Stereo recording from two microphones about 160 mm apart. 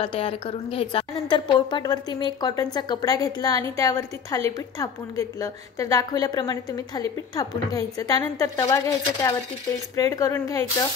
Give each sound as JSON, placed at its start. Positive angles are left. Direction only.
{"t": 0.0, "sound": "a woman's voice", "side_deg": 35}